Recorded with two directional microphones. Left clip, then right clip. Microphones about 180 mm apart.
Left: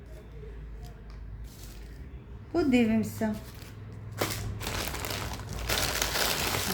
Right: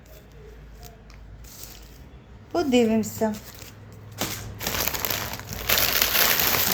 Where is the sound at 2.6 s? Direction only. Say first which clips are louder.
Right 5 dB; centre (ahead or behind).